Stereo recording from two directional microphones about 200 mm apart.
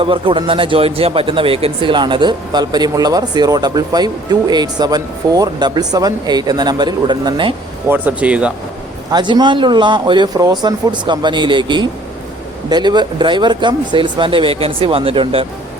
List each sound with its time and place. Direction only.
0.0 s speech: 25° right (ahead or behind)
7.9 s speech: 10° right (ahead or behind)
9.1 s speech: 20° right (ahead or behind)